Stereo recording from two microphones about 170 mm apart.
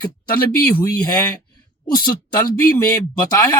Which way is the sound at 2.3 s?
20° left (ahead or behind).